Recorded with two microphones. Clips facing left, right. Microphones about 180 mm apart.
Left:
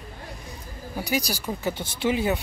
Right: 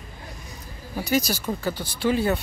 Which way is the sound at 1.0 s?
15° left (ahead or behind).